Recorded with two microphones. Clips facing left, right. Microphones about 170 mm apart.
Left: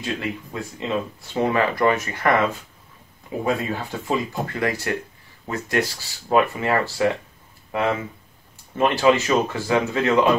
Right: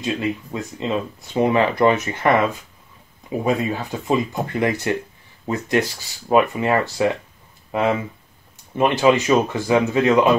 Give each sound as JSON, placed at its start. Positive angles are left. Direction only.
{"t": 0.0, "sound": "speech", "side_deg": -20}
{"t": 8.7, "sound": "speech", "side_deg": -20}